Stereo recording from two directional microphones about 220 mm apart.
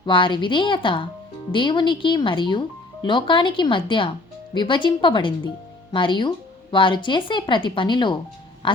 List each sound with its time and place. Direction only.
0.0 s speech: 20° left (ahead or behind)